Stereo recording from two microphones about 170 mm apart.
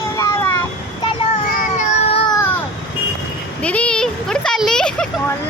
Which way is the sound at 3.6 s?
5° left (ahead or behind).